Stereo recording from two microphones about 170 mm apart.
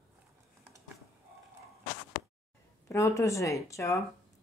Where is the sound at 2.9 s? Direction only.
20° left (ahead or behind).